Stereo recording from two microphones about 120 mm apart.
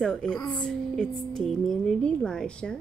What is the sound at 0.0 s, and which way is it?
Speech, 5° left (ahead or behind).